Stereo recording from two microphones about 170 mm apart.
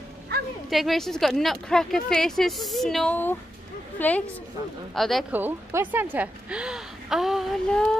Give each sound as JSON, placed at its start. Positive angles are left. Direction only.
{"t": 0.3, "sound": "a sound", "side_deg": -70}
{"t": 0.7, "sound": "a woman's voice", "side_deg": 0}
{"t": 5.3, "sound": "a woman's voice", "side_deg": -10}